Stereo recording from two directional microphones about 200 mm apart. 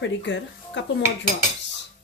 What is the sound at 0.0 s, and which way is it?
Speech, 65° left (ahead or behind).